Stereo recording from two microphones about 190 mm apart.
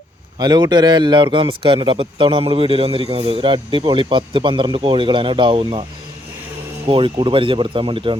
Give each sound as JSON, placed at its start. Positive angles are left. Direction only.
{"t": 0.3, "sound": "speech", "side_deg": -20}
{"t": 6.8, "sound": "speech", "side_deg": -25}